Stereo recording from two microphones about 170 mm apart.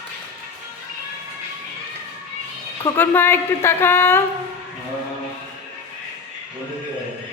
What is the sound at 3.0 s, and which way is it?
A woman's voice, 10° left (ahead or behind).